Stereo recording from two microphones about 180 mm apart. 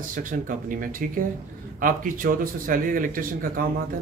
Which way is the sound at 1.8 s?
50° right (ahead or behind).